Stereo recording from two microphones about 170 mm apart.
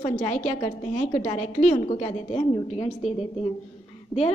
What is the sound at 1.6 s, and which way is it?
A woman's voice, 40° left (ahead or behind).